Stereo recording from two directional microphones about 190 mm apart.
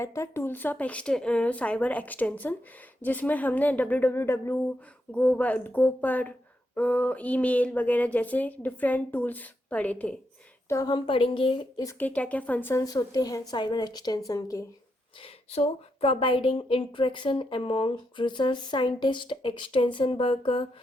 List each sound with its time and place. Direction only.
0.0 s speech: 15° left (ahead or behind)
10.7 s speech: 20° left (ahead or behind)
15.2 s speech: 30° left (ahead or behind)